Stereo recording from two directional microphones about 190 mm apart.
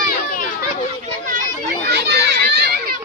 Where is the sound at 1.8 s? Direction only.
55° right (ahead or behind).